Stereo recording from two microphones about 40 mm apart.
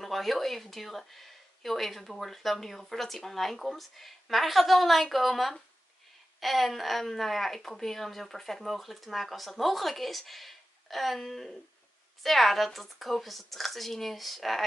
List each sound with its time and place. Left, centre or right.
0.0 s speech: centre